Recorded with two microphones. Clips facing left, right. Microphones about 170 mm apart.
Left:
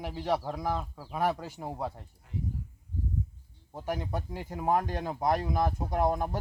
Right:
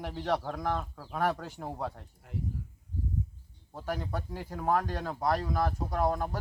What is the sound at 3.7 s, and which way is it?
Speech, 15° left (ahead or behind).